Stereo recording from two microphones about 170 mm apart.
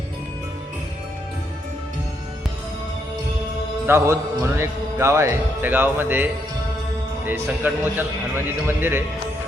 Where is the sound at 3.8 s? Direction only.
15° right (ahead or behind).